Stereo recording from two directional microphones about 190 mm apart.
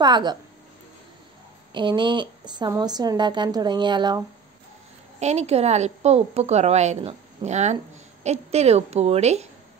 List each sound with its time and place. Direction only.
0.0 s speech: 20° right (ahead or behind)
1.7 s speech: 25° right (ahead or behind)
5.2 s a woman's voice: 35° right (ahead or behind)